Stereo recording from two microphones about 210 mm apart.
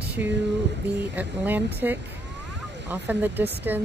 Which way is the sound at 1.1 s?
10° right (ahead or behind).